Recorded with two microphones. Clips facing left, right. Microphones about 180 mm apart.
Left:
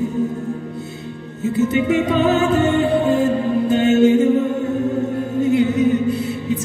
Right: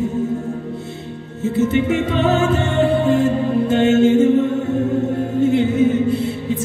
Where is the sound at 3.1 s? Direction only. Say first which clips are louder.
Right 1 dB; 35° left (ahead or behind).